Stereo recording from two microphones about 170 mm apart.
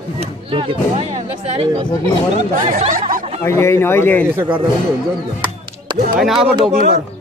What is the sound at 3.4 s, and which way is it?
Speech, 15° left (ahead or behind).